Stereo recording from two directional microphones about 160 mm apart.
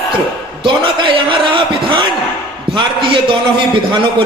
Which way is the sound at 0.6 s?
30° right (ahead or behind).